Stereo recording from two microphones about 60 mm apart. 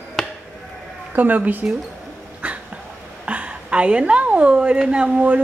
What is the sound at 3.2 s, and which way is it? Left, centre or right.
A woman's voice, right.